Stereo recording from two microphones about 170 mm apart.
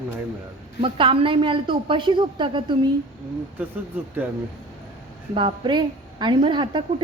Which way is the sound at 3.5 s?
10° right (ahead or behind).